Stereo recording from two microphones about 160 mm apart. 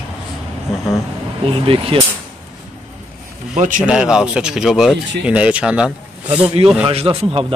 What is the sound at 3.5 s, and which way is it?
Speech, 50° right (ahead or behind).